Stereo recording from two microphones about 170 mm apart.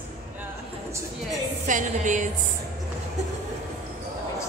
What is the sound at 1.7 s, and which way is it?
Speech, 50° right (ahead or behind).